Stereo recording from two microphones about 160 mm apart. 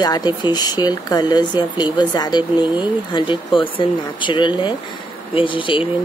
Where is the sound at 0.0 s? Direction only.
25° left (ahead or behind).